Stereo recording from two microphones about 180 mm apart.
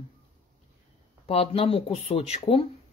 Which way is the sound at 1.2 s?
35° left (ahead or behind).